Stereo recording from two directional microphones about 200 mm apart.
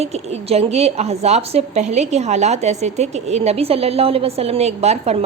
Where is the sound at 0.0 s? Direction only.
30° right (ahead or behind).